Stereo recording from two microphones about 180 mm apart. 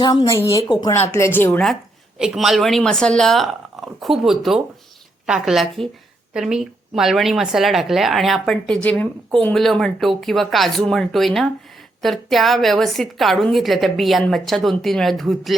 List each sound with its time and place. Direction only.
0.0 s a woman's voice: 20° left (ahead or behind); by 15.5 s centre (ahead or behind)